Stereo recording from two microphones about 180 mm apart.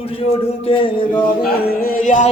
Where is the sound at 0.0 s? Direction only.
35° left (ahead or behind).